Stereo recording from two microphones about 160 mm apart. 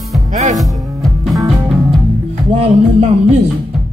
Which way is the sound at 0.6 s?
Centre (ahead or behind).